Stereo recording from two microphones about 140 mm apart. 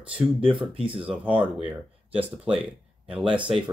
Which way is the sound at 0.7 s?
40° right (ahead or behind).